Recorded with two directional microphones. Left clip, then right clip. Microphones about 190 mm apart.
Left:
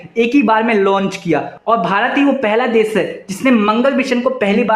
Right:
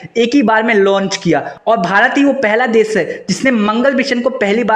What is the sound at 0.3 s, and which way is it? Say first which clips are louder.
Speech: right 2 dB; 25° right (ahead or behind).